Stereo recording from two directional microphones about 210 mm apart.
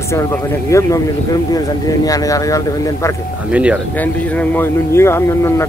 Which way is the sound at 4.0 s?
10° left (ahead or behind).